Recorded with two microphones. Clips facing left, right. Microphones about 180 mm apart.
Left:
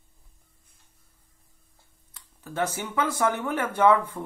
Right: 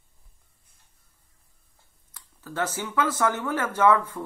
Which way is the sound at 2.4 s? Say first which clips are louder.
Left 1 dB; 20° left (ahead or behind).